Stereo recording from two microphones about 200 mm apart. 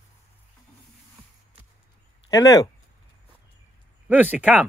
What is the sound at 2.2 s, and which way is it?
Speech, 15° left (ahead or behind).